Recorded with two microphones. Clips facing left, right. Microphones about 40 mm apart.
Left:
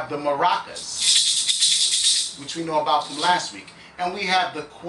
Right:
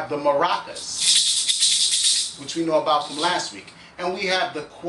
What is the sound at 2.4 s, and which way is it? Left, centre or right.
Speech, centre.